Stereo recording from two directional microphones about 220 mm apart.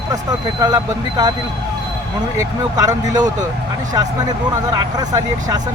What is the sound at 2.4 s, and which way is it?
Speech, 15° right (ahead or behind).